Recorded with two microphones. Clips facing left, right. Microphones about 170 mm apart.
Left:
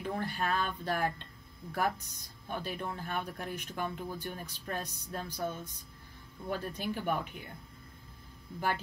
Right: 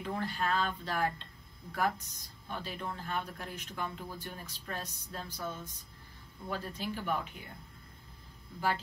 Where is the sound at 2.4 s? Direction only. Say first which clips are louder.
Left 2 dB; 55° left (ahead or behind).